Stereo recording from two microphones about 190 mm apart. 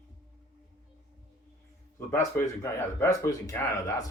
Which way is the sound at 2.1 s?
10° left (ahead or behind).